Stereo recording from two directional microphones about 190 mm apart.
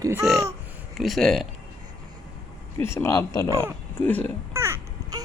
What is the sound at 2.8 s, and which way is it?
Speech, 15° left (ahead or behind).